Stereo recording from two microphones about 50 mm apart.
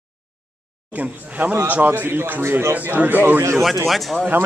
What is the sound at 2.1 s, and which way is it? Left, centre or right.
Speech, right.